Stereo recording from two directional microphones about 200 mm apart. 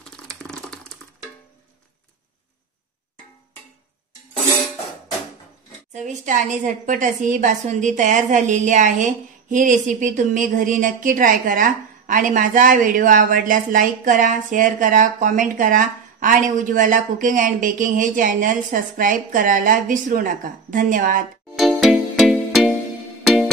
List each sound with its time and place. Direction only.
0.1 s a sound: 5° left (ahead or behind)
5.9 s a woman's voice: 40° right (ahead or behind)
21.5 s music: centre (ahead or behind)